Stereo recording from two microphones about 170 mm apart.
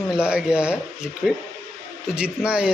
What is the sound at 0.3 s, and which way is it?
Speech, 5° right (ahead or behind).